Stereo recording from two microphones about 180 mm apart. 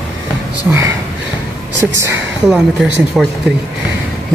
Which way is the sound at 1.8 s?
Centre (ahead or behind).